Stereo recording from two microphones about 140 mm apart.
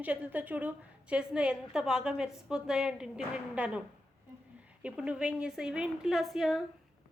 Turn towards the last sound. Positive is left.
turn(degrees=0)  # may be behind; listen again after turning